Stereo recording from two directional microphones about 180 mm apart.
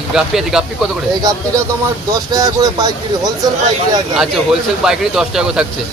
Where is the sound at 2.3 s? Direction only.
20° right (ahead or behind).